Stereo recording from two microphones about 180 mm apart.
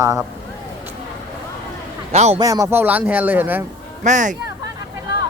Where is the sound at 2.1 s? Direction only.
35° right (ahead or behind).